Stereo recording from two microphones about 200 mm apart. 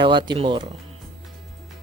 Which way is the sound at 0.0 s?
25° right (ahead or behind).